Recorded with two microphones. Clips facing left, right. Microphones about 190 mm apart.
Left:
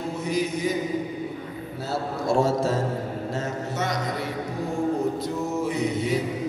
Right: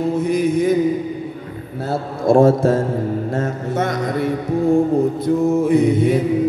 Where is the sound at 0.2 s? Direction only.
55° right (ahead or behind).